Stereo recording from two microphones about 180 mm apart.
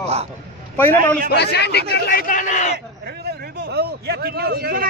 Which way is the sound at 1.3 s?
65° left (ahead or behind).